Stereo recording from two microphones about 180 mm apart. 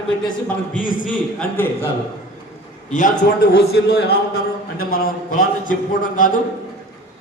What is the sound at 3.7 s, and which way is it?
A man's voice, 60° left (ahead or behind).